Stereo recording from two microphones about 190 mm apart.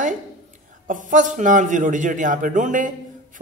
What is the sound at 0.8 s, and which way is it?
Speech, 40° right (ahead or behind).